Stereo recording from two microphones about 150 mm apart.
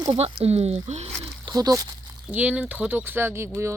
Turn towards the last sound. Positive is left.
turn(degrees=-20)  # may be behind; listen again after turning